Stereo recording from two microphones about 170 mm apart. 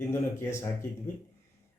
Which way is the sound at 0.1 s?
15° left (ahead or behind).